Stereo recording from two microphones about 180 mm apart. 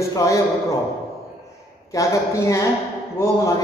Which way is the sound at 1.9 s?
15° left (ahead or behind).